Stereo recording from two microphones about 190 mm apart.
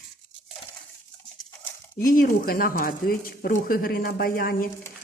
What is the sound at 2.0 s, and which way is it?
Speech, 45° left (ahead or behind).